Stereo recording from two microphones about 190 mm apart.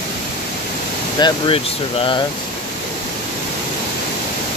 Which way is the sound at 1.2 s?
25° left (ahead or behind).